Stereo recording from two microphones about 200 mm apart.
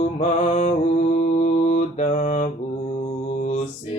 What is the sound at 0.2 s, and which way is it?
Mantra, 35° left (ahead or behind).